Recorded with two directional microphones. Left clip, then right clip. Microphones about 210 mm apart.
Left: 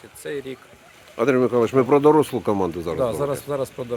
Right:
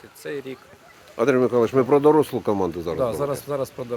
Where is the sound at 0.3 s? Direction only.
5° left (ahead or behind).